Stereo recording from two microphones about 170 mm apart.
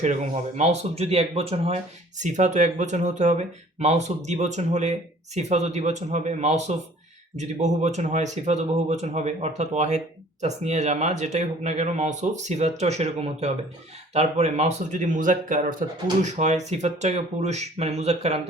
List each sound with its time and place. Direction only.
0.0 s speech: 40° right (ahead or behind)